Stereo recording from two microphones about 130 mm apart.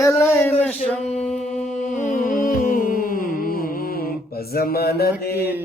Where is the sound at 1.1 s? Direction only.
55° left (ahead or behind).